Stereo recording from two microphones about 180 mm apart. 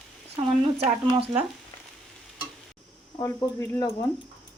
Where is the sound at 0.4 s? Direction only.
30° right (ahead or behind).